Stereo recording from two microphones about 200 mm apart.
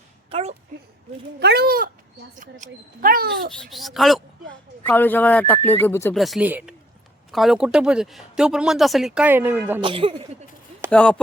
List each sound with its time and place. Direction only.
0.3 s a child's voice: 30° right (ahead or behind)
1.4 s speech: 55° right (ahead or behind)
3.5 s speech: centre (ahead or behind)
6.1 s speech: centre (ahead or behind)
9.8 s speech: 25° right (ahead or behind)
10.9 s speech: 5° left (ahead or behind)